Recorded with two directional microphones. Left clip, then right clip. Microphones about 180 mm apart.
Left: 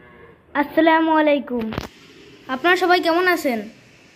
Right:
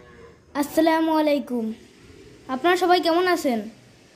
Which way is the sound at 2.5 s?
10° right (ahead or behind).